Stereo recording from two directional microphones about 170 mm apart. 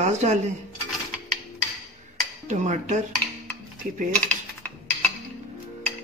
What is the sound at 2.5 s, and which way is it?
Speech, 45° right (ahead or behind).